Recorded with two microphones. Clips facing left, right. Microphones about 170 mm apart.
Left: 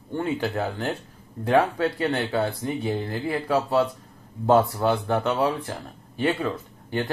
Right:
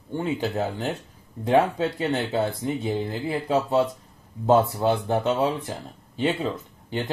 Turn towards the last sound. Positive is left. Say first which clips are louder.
# left 2 dB
turn(degrees=-20)  # may be behind; listen again after turning